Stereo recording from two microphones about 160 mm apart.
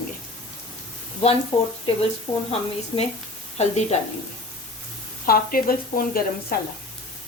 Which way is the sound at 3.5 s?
45° left (ahead or behind).